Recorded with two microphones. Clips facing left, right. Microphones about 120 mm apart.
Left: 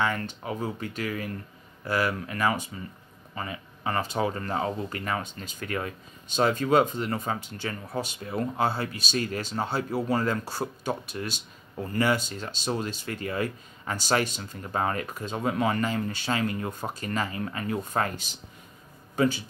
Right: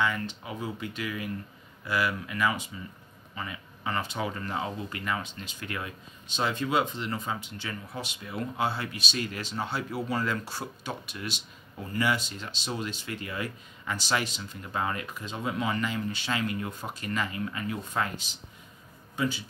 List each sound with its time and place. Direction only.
0.0 s speech: 45° left (ahead or behind)